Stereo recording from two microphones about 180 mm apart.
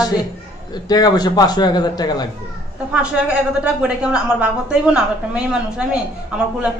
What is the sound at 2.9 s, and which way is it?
A woman's voice, 5° right (ahead or behind).